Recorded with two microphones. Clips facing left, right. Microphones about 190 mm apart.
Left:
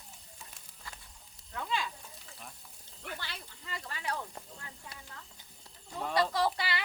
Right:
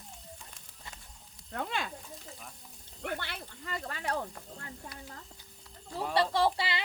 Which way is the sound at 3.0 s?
60° right (ahead or behind).